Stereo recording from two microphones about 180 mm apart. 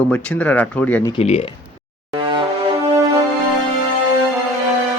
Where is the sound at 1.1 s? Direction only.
35° left (ahead or behind).